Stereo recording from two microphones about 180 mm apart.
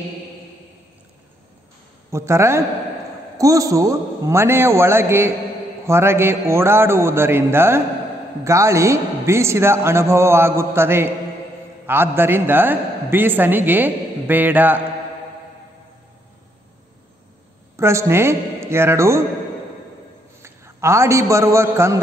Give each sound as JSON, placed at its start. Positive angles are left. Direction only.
{"t": 2.0, "sound": "a man's voice", "side_deg": -15}
{"t": 17.7, "sound": "a man's voice", "side_deg": -15}
{"t": 20.4, "sound": "a man's voice", "side_deg": -15}